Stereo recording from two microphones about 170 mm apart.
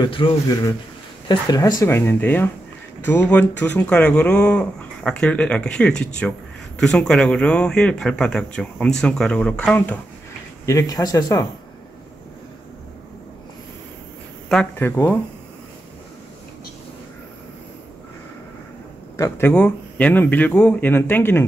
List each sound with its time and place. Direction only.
0.0 s speech: 25° left (ahead or behind)
14.5 s speech: 10° left (ahead or behind)
19.1 s speech: 15° left (ahead or behind)